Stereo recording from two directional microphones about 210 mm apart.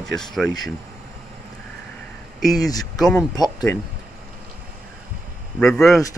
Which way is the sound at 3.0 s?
5° left (ahead or behind).